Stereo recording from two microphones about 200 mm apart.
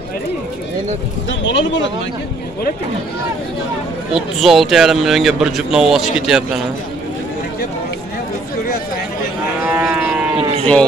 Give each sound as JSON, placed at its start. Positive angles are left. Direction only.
{"t": 1.4, "sound": "speech", "side_deg": 65}
{"t": 4.1, "sound": "a man's voice", "side_deg": 0}
{"t": 9.6, "sound": "livestock", "side_deg": -10}
{"t": 10.6, "sound": "speech", "side_deg": 5}